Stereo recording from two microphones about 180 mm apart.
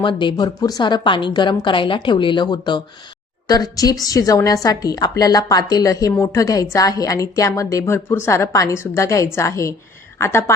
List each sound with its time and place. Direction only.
0.0 s a woman's voice: 25° left (ahead or behind)